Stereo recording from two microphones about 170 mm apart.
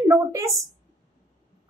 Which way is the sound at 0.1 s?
20° right (ahead or behind).